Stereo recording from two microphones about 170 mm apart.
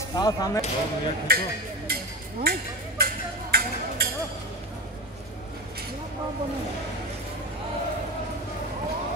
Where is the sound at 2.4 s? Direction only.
60° right (ahead or behind).